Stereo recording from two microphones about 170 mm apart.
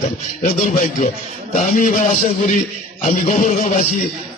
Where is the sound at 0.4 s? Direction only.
45° left (ahead or behind).